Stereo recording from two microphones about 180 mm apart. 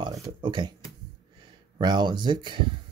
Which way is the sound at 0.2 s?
25° right (ahead or behind).